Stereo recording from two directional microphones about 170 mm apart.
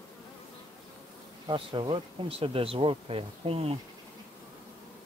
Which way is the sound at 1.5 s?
30° right (ahead or behind).